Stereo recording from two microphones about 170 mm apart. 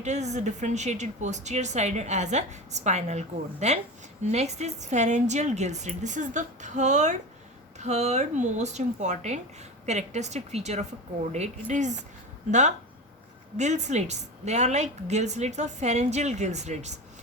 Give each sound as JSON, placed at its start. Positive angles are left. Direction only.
{"t": 0.0, "sound": "a woman's voice", "side_deg": -40}